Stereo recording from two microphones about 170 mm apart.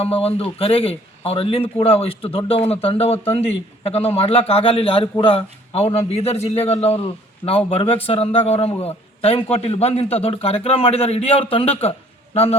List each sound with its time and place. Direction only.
0.0 s a man's voice: 35° left (ahead or behind)